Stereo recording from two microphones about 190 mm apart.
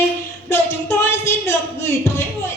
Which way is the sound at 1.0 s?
15° left (ahead or behind).